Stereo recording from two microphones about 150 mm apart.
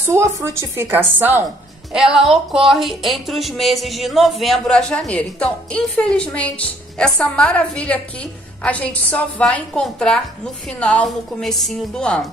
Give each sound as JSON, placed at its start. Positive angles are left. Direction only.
{"t": 0.0, "sound": "a woman's voice", "side_deg": -20}
{"t": 1.9, "sound": "speech", "side_deg": -5}